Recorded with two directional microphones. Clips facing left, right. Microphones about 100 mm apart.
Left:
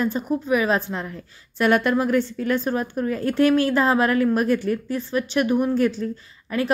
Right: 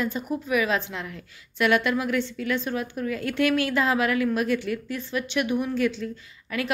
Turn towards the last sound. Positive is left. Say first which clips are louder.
# left 5 dB
turn(degrees=35)  # may be behind; listen again after turning